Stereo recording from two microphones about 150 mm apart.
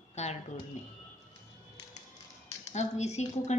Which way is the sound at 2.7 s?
50° left (ahead or behind).